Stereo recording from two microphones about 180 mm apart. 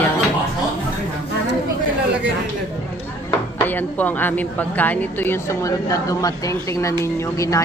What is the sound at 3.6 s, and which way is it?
Speech, 10° left (ahead or behind).